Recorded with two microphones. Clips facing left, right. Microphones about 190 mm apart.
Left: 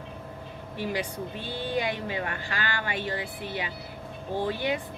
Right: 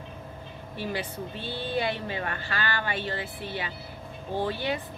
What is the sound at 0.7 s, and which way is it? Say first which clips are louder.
A woman's voice: left 2 dB; 15° left (ahead or behind).